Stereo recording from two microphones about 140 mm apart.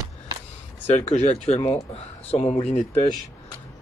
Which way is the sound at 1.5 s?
50° left (ahead or behind).